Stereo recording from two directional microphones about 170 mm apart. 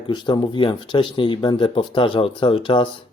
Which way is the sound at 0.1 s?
25° left (ahead or behind).